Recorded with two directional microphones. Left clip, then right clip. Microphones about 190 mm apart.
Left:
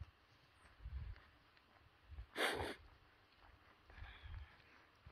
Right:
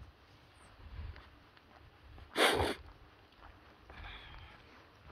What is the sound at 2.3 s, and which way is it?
Sneeze, 35° right (ahead or behind).